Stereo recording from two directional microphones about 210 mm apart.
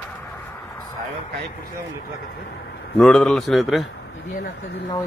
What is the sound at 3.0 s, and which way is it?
Speech, 5° left (ahead or behind).